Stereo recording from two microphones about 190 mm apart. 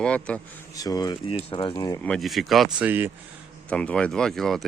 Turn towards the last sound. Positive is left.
turn(degrees=0)  # may be behind; listen again after turning